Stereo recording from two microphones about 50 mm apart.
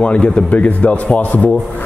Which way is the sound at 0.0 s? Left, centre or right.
Left.